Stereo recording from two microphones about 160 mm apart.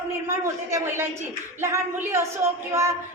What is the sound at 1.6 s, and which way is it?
Speech, 15° right (ahead or behind).